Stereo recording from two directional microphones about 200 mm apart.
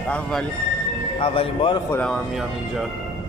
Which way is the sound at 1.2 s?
25° left (ahead or behind).